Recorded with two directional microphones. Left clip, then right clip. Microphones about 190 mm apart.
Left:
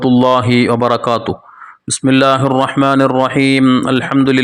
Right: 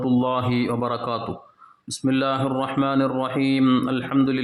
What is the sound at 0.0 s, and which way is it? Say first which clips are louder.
Speech: left 11 dB; 35° left (ahead or behind).